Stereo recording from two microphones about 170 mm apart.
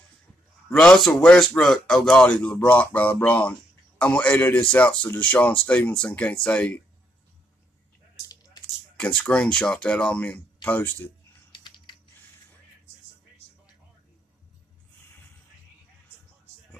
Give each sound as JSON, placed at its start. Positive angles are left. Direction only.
{"t": 0.7, "sound": "a man's voice", "side_deg": 5}
{"t": 8.9, "sound": "a man's voice", "side_deg": 5}
{"t": 11.5, "sound": "typing", "side_deg": 25}